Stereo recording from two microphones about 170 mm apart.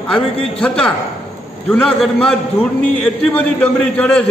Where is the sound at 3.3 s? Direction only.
10° left (ahead or behind).